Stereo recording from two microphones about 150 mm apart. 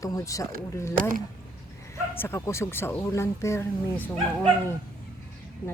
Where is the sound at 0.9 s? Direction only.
65° right (ahead or behind).